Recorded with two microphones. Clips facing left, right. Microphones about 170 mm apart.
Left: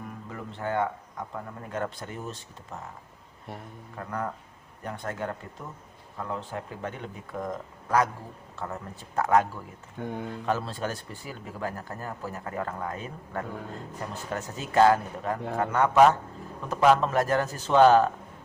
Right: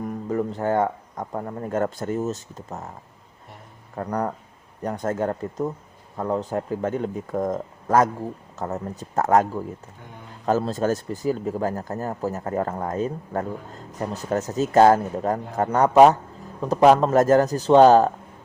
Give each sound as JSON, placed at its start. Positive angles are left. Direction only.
{"t": 0.0, "sound": "speech", "side_deg": -40}
{"t": 3.9, "sound": "speech", "side_deg": -40}
{"t": 10.0, "sound": "speech", "side_deg": 65}
{"t": 10.4, "sound": "speech", "side_deg": -40}